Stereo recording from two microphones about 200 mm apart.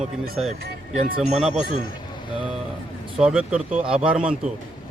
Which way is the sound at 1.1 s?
30° right (ahead or behind).